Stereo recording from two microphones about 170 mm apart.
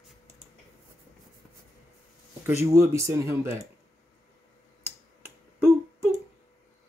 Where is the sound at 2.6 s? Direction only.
15° right (ahead or behind).